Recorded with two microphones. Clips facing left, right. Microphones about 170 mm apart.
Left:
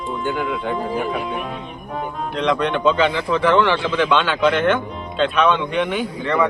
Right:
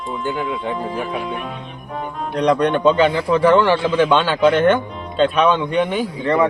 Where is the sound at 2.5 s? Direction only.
45° right (ahead or behind).